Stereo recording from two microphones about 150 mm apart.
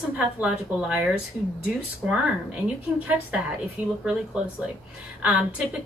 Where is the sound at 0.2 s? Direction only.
10° right (ahead or behind).